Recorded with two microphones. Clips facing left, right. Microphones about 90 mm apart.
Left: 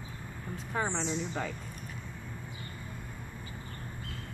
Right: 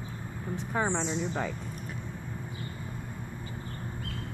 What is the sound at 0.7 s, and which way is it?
Speech, 20° right (ahead or behind).